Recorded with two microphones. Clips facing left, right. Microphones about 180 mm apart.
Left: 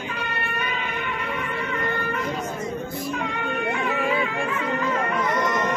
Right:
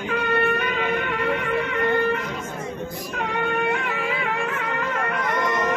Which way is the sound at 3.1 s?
65° right (ahead or behind).